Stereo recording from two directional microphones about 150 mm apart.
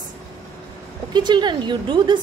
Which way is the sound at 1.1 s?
30° right (ahead or behind).